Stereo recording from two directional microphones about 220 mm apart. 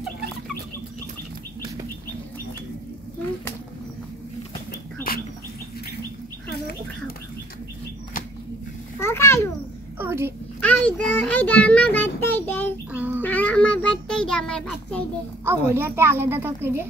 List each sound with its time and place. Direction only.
5.1 s bird: 40° left (ahead or behind)
9.0 s babbling: 10° left (ahead or behind)
9.9 s a sound: 10° right (ahead or behind)
10.6 s a sound: 5° left (ahead or behind)
12.9 s child singing: 5° right (ahead or behind)
13.2 s child singing: 5° left (ahead or behind)
15.4 s a woman's voice: 10° right (ahead or behind)